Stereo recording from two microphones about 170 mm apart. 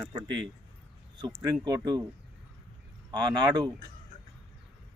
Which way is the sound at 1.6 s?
25° right (ahead or behind).